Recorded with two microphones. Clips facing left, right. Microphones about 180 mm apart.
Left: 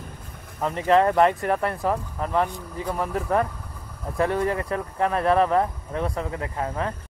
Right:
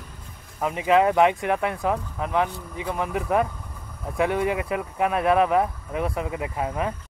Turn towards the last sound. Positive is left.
turn(degrees=-10)  # may be behind; listen again after turning